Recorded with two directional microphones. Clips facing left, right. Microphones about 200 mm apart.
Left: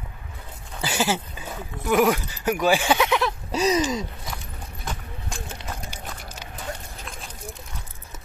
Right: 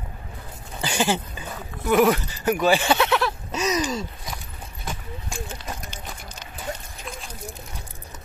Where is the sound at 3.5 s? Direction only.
35° left (ahead or behind).